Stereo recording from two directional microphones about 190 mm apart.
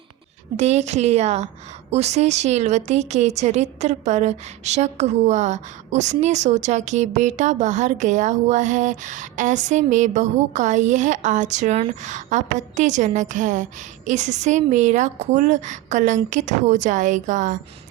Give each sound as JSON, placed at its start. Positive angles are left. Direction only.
{"t": 0.5, "sound": "a woman's voice", "side_deg": -35}